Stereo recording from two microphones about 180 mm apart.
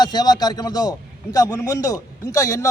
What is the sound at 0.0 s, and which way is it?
A man's voice, 25° left (ahead or behind).